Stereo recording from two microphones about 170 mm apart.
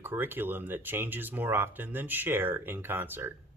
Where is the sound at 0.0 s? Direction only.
10° right (ahead or behind).